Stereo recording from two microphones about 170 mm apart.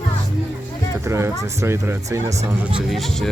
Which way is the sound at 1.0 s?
15° right (ahead or behind).